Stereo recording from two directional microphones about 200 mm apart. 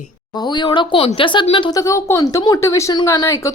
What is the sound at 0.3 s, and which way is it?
Speech, 20° left (ahead or behind).